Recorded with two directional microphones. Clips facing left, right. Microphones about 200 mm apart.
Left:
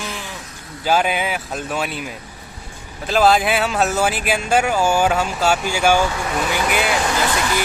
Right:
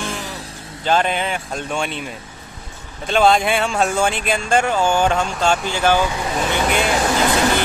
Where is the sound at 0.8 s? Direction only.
5° left (ahead or behind).